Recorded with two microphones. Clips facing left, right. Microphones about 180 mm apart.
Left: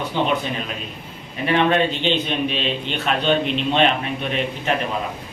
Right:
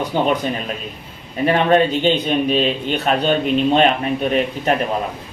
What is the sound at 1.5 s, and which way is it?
A man's voice, 40° right (ahead or behind).